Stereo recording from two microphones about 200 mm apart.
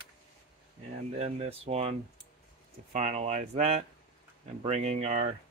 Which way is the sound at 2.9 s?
35° right (ahead or behind).